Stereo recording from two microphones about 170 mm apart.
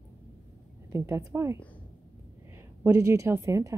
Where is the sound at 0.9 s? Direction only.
15° right (ahead or behind).